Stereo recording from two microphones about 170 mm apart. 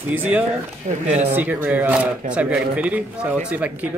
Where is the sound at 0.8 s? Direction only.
45° right (ahead or behind).